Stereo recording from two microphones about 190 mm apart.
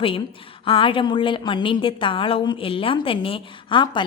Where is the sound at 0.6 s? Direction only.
30° left (ahead or behind).